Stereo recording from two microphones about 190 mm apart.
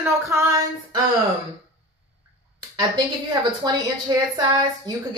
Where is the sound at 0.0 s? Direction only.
15° right (ahead or behind).